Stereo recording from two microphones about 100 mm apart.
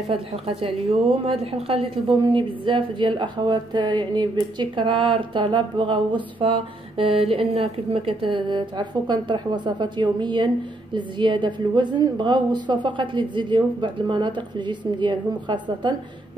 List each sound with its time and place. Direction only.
1.2 s a woman's voice: 75° right (ahead or behind)
2.0 s a woman's voice: 55° right (ahead or behind)
7.3 s a woman's voice: 80° right; by 16.0 s 50° right (ahead or behind)